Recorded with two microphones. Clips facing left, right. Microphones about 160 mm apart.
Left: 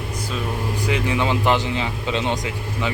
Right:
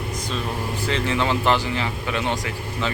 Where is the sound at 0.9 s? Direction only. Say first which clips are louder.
Left 1 dB; 15° left (ahead or behind).